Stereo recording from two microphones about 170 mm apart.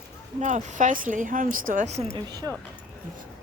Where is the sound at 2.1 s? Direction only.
25° right (ahead or behind).